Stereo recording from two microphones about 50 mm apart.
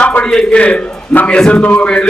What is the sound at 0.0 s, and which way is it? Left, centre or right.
A man's voice, left.